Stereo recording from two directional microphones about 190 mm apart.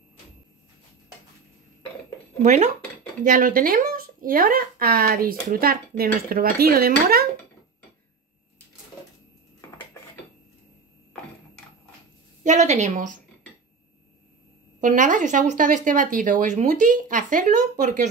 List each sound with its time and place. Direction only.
2.4 s speech: 40° right (ahead or behind)
9.9 s a sound: 15° left (ahead or behind)
12.4 s speech: 40° right (ahead or behind)
14.8 s speech: 40° right (ahead or behind)